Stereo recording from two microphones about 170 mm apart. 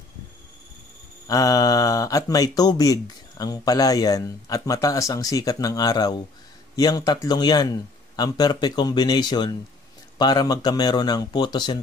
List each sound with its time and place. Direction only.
1.2 s speech: 20° left (ahead or behind)